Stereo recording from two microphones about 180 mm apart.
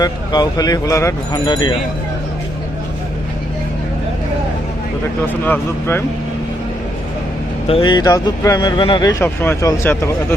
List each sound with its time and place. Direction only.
0.0 s speech: 20° left (ahead or behind)
5.2 s speech: 10° left (ahead or behind)
7.7 s speech: 25° left (ahead or behind)
9.2 s speech: 10° left (ahead or behind)